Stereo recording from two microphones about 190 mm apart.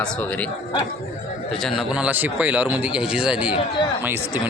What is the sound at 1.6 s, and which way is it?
A man's voice, centre (ahead or behind).